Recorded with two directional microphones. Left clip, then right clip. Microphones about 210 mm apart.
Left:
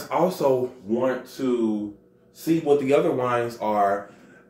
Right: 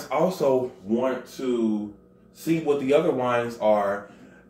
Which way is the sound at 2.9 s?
15° left (ahead or behind).